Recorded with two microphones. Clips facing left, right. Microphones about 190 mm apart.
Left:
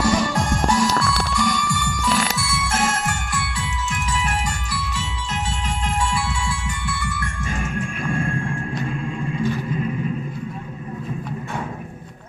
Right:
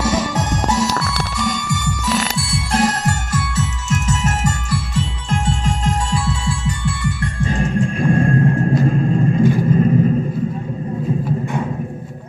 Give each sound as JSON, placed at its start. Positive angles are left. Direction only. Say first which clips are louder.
{"t": 0.0, "sound": "music", "louder": "right 1 dB", "side_deg": -20}
{"t": 1.4, "sound": "telephone bell ringing", "louder": "right 2 dB", "side_deg": -20}
{"t": 2.3, "sound": "music", "louder": "right 5 dB", "side_deg": -35}
{"t": 5.9, "sound": "music", "louder": "right 1 dB", "side_deg": -40}